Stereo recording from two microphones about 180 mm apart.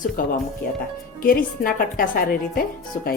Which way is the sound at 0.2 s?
50° left (ahead or behind).